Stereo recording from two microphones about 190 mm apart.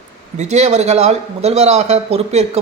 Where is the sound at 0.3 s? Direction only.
35° right (ahead or behind).